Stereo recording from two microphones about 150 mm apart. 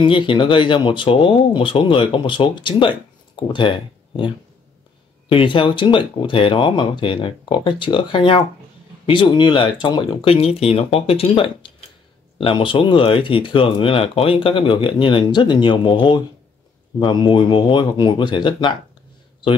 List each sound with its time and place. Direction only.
0.0 s speech: 35° left (ahead or behind)
5.3 s speech: 35° left (ahead or behind)